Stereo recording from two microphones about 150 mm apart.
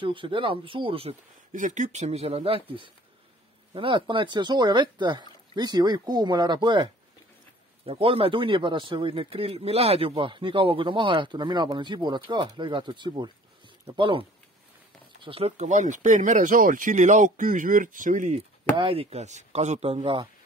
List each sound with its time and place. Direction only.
0.0 s a man's voice: 35° right (ahead or behind)
1.5 s a man's voice: 55° right (ahead or behind); by 14.2 s 35° right (ahead or behind)
15.2 s speech: 40° right (ahead or behind); by 18.4 s 55° right (ahead or behind)
18.8 s speech: 40° right (ahead or behind)